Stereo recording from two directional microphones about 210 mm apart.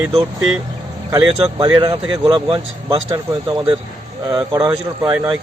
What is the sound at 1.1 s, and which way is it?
Speech, 20° right (ahead or behind).